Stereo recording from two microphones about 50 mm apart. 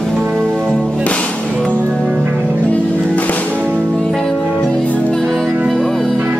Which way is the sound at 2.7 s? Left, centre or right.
Left.